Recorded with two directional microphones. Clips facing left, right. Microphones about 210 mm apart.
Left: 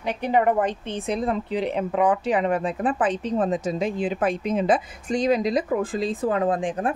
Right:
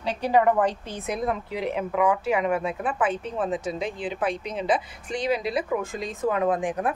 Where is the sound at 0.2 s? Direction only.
25° left (ahead or behind).